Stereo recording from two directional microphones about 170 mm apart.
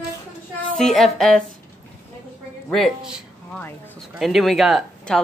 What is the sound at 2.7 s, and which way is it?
Speech, centre (ahead or behind).